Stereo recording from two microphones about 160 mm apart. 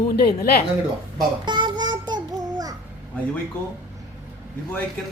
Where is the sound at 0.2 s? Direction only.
75° left (ahead or behind).